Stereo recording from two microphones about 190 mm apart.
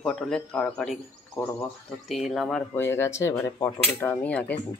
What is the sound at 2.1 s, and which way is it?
Speech, centre (ahead or behind).